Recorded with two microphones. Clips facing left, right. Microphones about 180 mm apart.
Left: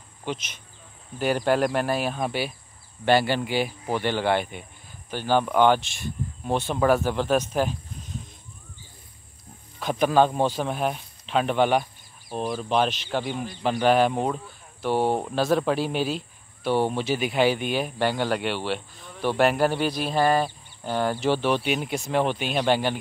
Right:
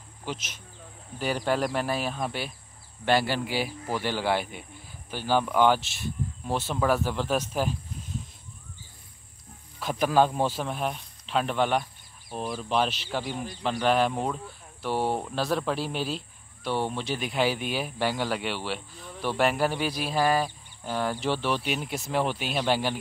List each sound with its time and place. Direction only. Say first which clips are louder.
1.2 s speech: left 5 dB; centre (ahead or behind)
9.8 s speech: left 3 dB; 5° right (ahead or behind)
13.2 s speech: left 3 dB; 40° right (ahead or behind)
13.6 s speech: left 4 dB; 5° left (ahead or behind)
18.9 s cricket: right 1 dB; 35° right (ahead or behind)
19.2 s speech: left 4 dB; centre (ahead or behind)